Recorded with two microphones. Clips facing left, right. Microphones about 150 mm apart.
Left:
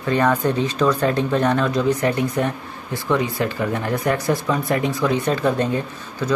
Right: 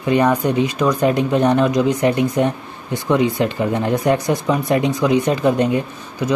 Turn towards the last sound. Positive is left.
turn(degrees=-15)  # may be behind; listen again after turning